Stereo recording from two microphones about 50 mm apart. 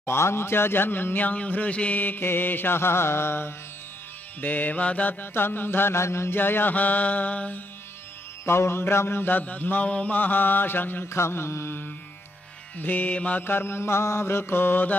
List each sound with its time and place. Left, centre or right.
0.0 s a man's voice: left
4.4 s mantra: left
5.2 s a man's voice: left
6.3 s mantra: left
8.5 s mantra: left
11.1 s mantra: left
12.7 s mantra: left
13.4 s a man's voice: left